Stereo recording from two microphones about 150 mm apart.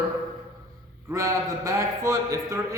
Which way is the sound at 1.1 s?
20° right (ahead or behind).